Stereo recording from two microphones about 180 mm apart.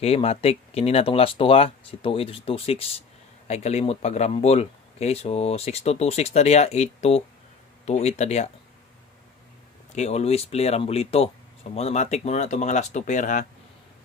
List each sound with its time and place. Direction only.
0.0 s speech: 35° left (ahead or behind)
9.9 s speech: 35° left (ahead or behind)